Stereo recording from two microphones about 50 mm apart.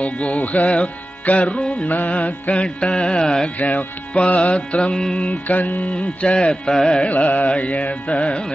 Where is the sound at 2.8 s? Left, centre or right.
Left.